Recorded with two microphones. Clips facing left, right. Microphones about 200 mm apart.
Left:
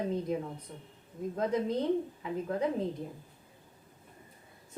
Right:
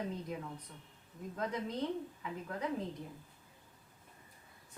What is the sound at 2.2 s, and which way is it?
Speech, 25° left (ahead or behind).